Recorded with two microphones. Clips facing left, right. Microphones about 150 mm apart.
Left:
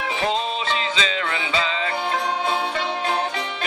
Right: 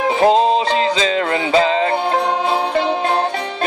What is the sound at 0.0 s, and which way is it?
Music, 40° right (ahead or behind).